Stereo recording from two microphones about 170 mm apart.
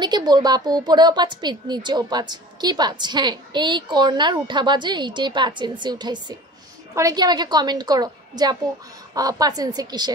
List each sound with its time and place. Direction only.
0.0 s a woman's voice: 25° right (ahead or behind)